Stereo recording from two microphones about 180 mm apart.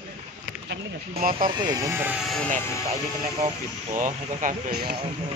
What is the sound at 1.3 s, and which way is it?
Speech, 25° right (ahead or behind).